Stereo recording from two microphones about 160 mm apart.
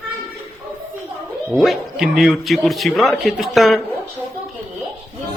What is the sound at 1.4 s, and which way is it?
Speech, centre (ahead or behind).